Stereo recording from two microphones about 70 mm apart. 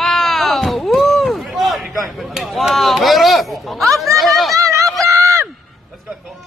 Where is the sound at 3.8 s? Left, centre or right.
Right.